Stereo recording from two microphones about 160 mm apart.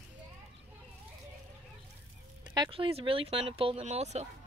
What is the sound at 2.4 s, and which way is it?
Speech, 30° right (ahead or behind).